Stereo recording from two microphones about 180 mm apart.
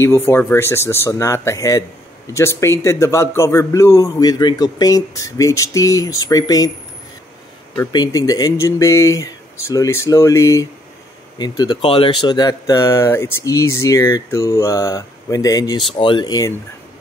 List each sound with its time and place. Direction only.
0.0 s speech: 15° left (ahead or behind)
7.7 s speech: 20° left (ahead or behind)